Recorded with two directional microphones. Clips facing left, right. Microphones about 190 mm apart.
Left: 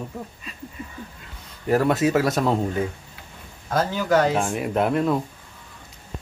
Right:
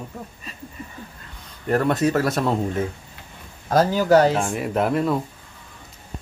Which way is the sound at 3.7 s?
35° right (ahead or behind).